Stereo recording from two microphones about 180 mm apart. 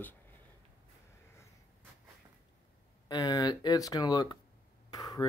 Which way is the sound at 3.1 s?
20° left (ahead or behind).